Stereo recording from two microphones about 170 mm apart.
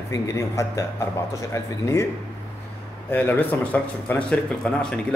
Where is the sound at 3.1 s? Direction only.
10° left (ahead or behind).